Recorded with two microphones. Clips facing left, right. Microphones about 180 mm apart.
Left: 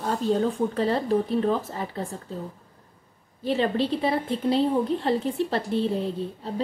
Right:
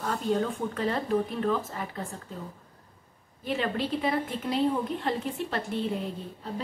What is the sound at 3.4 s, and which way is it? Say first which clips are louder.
A woman's voice: left 6 dB; 30° left (ahead or behind).